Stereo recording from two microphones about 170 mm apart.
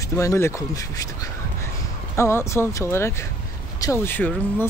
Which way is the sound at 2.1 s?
15° left (ahead or behind).